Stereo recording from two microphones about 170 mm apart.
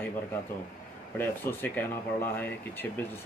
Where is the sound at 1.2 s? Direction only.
10° left (ahead or behind).